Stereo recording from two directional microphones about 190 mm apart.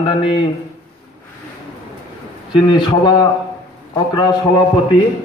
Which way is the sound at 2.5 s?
25° left (ahead or behind).